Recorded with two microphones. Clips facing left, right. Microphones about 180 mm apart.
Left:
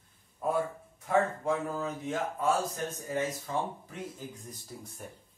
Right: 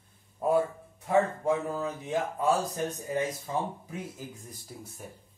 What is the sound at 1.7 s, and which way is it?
Speech, 5° right (ahead or behind).